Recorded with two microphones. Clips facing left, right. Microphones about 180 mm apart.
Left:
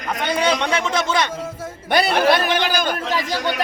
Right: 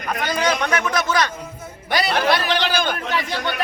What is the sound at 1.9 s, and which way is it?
Speech, 50° left (ahead or behind).